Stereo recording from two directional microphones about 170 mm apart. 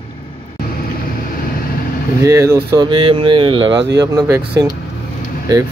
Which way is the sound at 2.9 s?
30° right (ahead or behind).